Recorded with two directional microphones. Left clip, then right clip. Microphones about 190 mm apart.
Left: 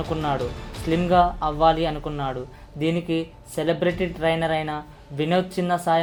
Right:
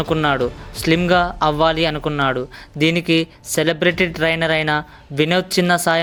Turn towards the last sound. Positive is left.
turn(degrees=-35)  # may be behind; listen again after turning